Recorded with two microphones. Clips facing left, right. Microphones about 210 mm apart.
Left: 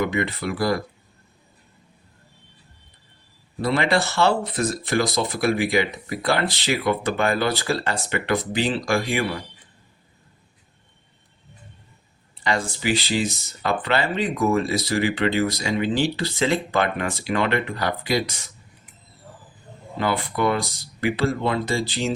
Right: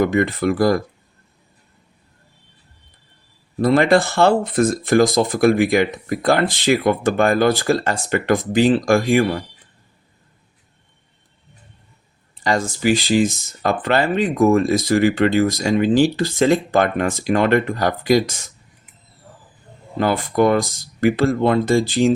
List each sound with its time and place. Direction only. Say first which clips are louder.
0.0 s speech: right 7 dB; 45° right (ahead or behind)
3.6 s speech: right 7 dB; 50° right (ahead or behind)
12.4 s speech: right 5 dB; 40° right (ahead or behind)
20.0 s speech: right 6 dB; 45° right (ahead or behind)